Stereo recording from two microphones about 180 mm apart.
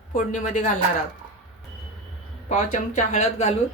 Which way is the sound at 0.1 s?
45° left (ahead or behind).